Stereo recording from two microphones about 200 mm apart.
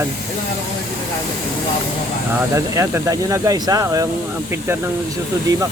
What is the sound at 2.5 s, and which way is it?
Speech, 15° right (ahead or behind).